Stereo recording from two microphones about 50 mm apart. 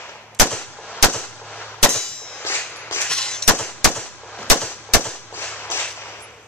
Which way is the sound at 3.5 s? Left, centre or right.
Left.